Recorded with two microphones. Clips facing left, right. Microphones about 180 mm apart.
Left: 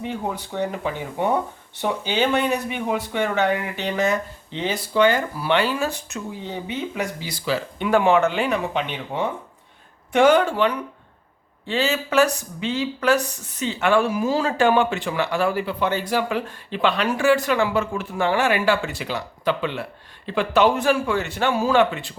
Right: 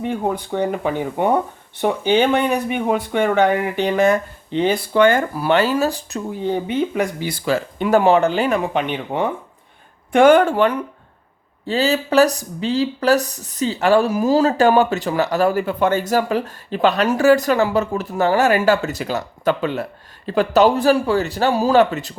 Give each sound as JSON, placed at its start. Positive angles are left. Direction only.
{"t": 0.0, "sound": "speech", "side_deg": -55}
{"t": 6.5, "sound": "speech", "side_deg": -55}
{"t": 11.6, "sound": "speech", "side_deg": -35}